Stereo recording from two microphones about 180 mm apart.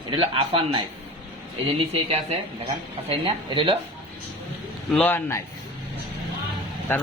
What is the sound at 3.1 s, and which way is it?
Speech, 30° right (ahead or behind).